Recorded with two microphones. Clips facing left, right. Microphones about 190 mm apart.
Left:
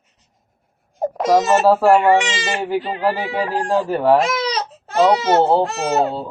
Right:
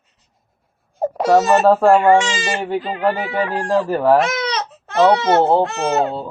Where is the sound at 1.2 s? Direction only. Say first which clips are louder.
Right 1 dB; 15° left (ahead or behind).